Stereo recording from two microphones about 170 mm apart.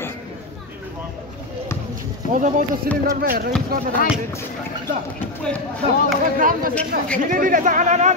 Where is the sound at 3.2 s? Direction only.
60° right (ahead or behind).